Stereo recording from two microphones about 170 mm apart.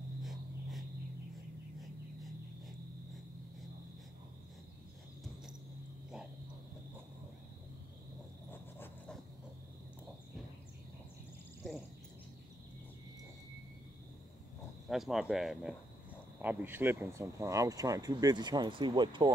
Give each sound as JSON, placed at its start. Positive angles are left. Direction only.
{"t": 0.2, "sound": "cricket", "side_deg": 0}
{"t": 8.5, "sound": "a sound", "side_deg": 10}
{"t": 14.9, "sound": "speech", "side_deg": 0}